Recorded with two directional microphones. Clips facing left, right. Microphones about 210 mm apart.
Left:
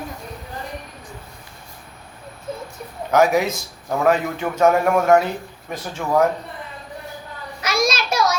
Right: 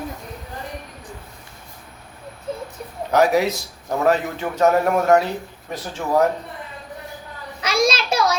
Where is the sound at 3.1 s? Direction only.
35° right (ahead or behind).